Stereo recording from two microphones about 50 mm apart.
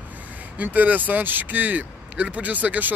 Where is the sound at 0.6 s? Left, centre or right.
Right.